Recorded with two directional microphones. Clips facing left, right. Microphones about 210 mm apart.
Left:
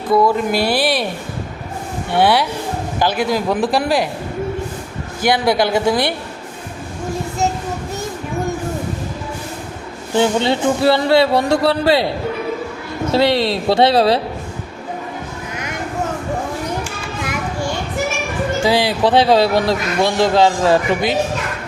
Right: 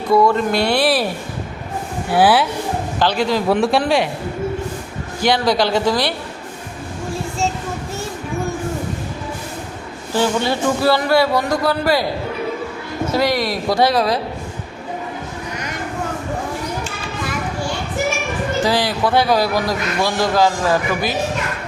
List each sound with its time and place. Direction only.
0.1 s speech: 5° left (ahead or behind)
2.1 s speech: 5° right (ahead or behind)
3.0 s a man's voice: 10° left (ahead or behind)
5.9 s a man's voice: 20° left (ahead or behind)
10.2 s a man's voice: 20° left (ahead or behind)
13.1 s a man's voice: 30° left (ahead or behind)
18.6 s a man's voice: 10° left (ahead or behind)
19.0 s a man's voice: 25° left (ahead or behind)